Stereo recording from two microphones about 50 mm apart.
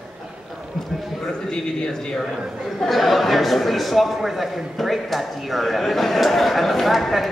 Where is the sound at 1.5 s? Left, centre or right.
Centre.